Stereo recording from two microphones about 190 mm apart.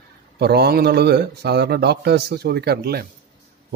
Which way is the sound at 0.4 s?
60° right (ahead or behind).